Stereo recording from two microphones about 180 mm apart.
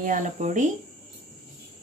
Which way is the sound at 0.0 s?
45° right (ahead or behind).